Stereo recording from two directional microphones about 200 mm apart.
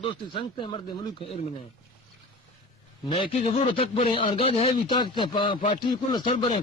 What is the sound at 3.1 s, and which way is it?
Speech, 25° left (ahead or behind).